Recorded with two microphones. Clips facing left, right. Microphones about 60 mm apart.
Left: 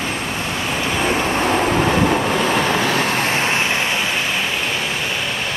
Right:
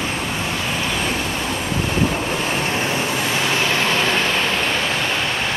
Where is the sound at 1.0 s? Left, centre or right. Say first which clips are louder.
Left 5 dB; left.